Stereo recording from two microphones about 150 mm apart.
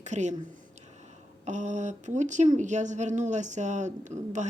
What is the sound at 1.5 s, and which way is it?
A woman's voice, 50° right (ahead or behind).